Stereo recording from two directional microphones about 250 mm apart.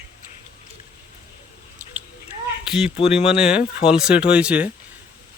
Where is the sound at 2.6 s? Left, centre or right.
Centre.